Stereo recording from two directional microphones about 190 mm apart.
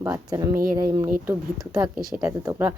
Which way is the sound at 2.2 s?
15° right (ahead or behind).